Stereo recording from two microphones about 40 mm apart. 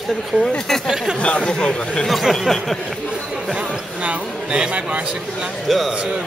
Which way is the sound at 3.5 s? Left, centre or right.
Right.